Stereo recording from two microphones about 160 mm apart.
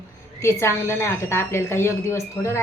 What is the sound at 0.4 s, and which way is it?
A woman's voice, 15° left (ahead or behind).